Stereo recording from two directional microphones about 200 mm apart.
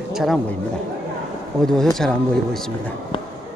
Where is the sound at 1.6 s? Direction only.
Centre (ahead or behind).